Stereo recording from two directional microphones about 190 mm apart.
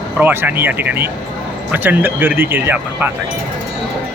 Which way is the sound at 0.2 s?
10° right (ahead or behind).